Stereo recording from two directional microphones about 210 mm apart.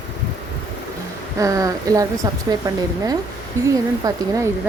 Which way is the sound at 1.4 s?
15° right (ahead or behind).